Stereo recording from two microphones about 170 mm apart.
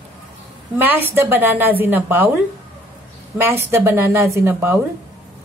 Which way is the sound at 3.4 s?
15° right (ahead or behind).